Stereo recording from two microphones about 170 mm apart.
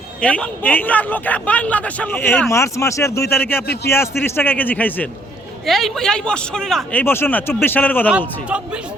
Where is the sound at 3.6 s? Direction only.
70° left (ahead or behind).